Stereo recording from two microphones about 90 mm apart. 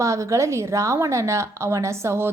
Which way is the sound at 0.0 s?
35° right (ahead or behind).